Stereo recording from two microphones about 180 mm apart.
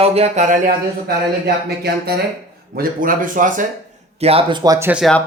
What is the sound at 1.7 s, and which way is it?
Speech, 60° right (ahead or behind).